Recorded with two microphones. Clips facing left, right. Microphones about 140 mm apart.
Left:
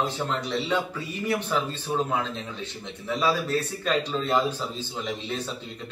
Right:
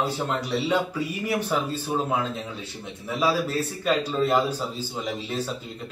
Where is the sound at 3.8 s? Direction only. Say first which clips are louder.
Right 6 dB; 10° right (ahead or behind).